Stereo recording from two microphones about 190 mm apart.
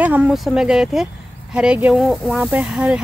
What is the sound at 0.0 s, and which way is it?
Speech, 5° right (ahead or behind).